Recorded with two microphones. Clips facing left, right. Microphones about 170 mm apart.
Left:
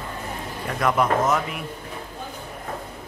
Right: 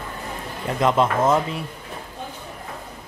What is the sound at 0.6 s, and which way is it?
Speech, 25° right (ahead or behind).